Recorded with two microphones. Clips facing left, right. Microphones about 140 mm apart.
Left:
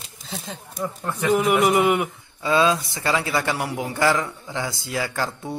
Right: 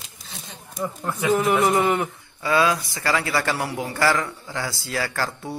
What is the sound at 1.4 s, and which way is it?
Speech, 5° left (ahead or behind).